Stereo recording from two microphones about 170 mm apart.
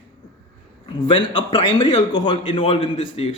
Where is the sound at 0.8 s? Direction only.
30° left (ahead or behind).